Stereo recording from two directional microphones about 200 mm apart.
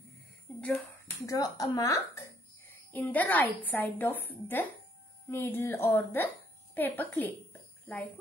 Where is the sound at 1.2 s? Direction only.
15° left (ahead or behind).